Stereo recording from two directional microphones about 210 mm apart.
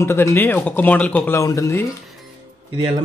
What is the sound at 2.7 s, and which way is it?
Speech, 25° right (ahead or behind).